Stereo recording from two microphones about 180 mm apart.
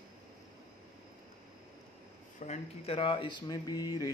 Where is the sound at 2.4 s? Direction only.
35° left (ahead or behind); by 4.1 s 20° left (ahead or behind).